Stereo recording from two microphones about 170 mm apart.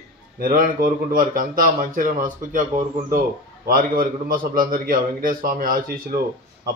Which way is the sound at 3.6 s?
55° right (ahead or behind).